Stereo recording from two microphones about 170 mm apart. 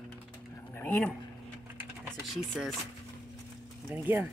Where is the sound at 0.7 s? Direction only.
10° left (ahead or behind).